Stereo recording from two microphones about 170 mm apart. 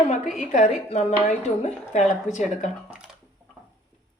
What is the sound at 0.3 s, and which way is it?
Speech, 45° left (ahead or behind).